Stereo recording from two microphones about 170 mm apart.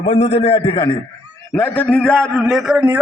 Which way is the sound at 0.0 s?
40° left (ahead or behind).